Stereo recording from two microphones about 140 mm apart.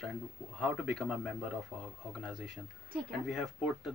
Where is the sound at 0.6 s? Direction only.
Centre (ahead or behind).